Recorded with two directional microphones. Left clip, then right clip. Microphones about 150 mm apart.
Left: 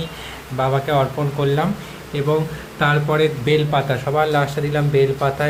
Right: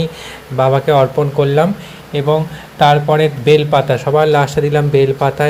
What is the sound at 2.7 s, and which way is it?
A man's voice, 35° right (ahead or behind).